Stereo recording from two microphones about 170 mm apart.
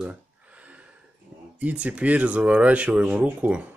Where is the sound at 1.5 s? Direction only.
10° right (ahead or behind).